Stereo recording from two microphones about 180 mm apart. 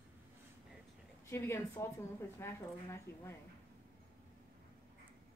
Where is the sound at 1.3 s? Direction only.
15° left (ahead or behind).